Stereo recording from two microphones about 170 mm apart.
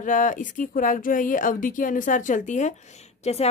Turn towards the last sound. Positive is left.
turn(degrees=40)  # may be behind; listen again after turning